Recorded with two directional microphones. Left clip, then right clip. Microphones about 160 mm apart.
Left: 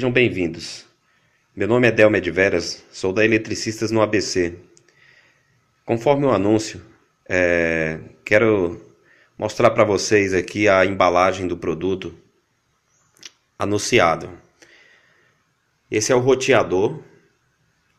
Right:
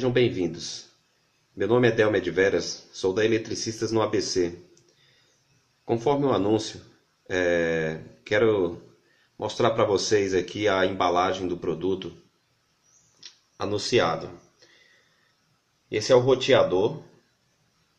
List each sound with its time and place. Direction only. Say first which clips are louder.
0.0 s speech: left 5 dB; 15° left (ahead or behind)
5.9 s speech: left 6 dB; 15° left (ahead or behind)
13.2 s speech: left 6 dB; 25° left (ahead or behind)
15.9 s speech: left 3 dB; 20° left (ahead or behind)